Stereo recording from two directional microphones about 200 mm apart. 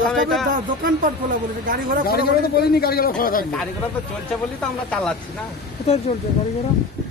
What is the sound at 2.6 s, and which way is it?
Speech, 50° left (ahead or behind).